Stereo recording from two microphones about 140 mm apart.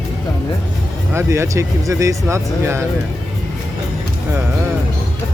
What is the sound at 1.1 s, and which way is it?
Speech, 20° right (ahead or behind).